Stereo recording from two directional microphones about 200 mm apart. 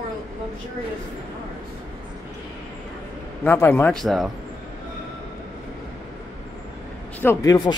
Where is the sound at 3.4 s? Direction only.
10° left (ahead or behind).